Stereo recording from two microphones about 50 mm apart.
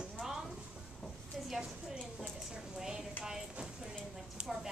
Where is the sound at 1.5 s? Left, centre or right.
Centre.